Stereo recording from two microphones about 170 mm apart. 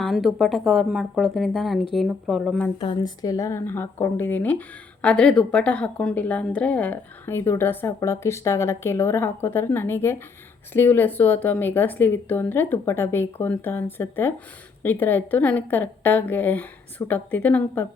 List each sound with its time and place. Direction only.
0.0 s speech: centre (ahead or behind)
2.7 s a woman's voice: 30° left (ahead or behind); by 17.8 s 10° left (ahead or behind)